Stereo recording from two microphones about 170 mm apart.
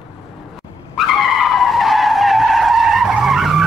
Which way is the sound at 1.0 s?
Centre (ahead or behind).